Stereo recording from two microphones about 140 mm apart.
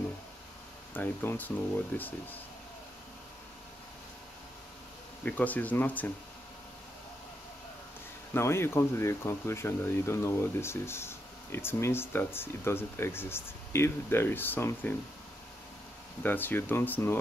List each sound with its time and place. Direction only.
0.9 s speech: 15° left (ahead or behind)
5.2 s speech: 10° left (ahead or behind)
8.3 s speech: 20° left (ahead or behind)
16.2 s speech: 15° left (ahead or behind)